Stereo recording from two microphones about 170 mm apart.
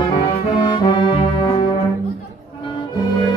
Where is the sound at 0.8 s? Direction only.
25° left (ahead or behind).